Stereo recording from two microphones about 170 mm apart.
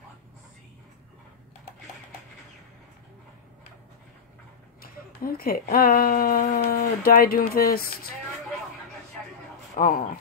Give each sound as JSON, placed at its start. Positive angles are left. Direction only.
{"t": 4.8, "sound": "speech", "side_deg": 60}
{"t": 9.8, "sound": "speech", "side_deg": 55}